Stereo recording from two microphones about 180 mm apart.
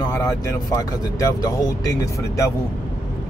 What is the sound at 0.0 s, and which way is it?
Vehicle, 15° left (ahead or behind).